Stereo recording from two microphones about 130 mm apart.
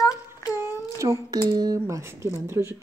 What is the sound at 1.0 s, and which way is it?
Speech, 25° right (ahead or behind).